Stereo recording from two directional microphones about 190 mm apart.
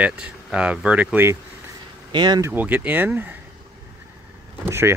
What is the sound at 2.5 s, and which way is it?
Speech, 10° right (ahead or behind).